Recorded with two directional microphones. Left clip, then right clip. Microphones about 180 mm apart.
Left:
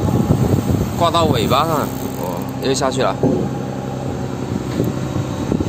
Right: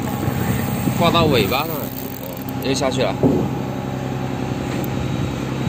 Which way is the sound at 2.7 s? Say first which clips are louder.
Left 2 dB; 20° left (ahead or behind).